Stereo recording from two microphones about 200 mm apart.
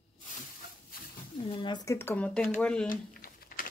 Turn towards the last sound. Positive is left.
turn(degrees=45)  # may be behind; listen again after turning